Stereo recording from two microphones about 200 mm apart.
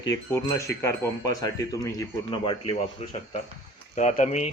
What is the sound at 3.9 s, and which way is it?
Speech, 35° left (ahead or behind).